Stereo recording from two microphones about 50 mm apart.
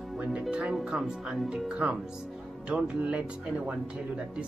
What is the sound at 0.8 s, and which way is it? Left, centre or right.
Speech, centre.